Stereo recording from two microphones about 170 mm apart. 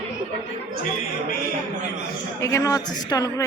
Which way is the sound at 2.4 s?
15° left (ahead or behind).